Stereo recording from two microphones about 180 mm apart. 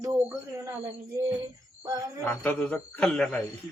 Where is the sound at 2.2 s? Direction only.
10° left (ahead or behind).